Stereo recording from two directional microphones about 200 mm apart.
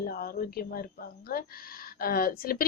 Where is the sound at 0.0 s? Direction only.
50° left (ahead or behind).